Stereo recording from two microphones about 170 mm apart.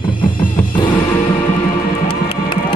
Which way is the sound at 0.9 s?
10° left (ahead or behind).